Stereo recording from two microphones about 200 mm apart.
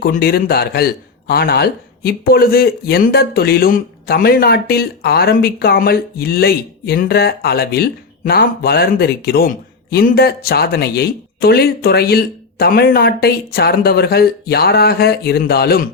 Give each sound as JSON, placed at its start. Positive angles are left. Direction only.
{"t": 0.0, "sound": "speech", "side_deg": 50}